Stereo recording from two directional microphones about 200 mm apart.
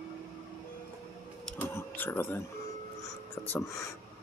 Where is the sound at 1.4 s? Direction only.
10° left (ahead or behind).